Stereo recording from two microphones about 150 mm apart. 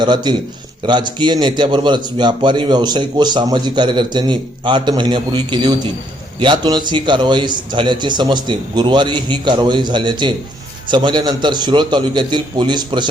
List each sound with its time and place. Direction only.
0.0 s a man's voice: 30° right (ahead or behind)